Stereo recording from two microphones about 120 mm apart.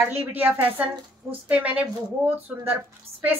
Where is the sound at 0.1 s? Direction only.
15° right (ahead or behind).